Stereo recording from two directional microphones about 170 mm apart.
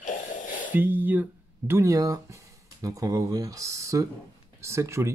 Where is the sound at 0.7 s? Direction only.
10° right (ahead or behind).